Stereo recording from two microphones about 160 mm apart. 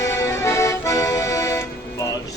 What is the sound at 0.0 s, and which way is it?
Accordion, 15° left (ahead or behind).